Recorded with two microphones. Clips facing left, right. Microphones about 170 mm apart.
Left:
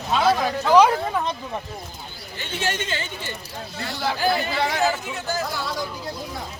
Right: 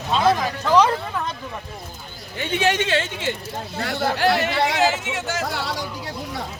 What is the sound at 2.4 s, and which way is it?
Speech, 65° right (ahead or behind).